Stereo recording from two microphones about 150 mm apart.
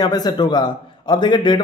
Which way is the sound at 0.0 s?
25° left (ahead or behind).